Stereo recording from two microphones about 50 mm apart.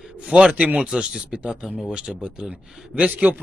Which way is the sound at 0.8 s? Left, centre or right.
Centre.